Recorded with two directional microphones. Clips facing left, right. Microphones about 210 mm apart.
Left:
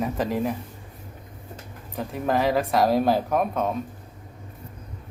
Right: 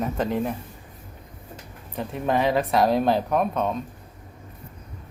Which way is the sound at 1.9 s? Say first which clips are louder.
Even; centre (ahead or behind).